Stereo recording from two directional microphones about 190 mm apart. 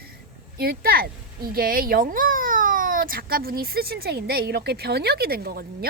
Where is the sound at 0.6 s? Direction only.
55° right (ahead or behind).